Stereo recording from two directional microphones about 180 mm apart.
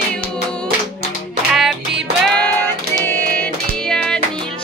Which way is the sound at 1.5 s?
Centre (ahead or behind).